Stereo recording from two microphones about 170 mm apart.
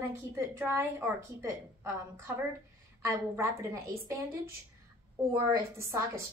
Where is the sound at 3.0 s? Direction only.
15° right (ahead or behind).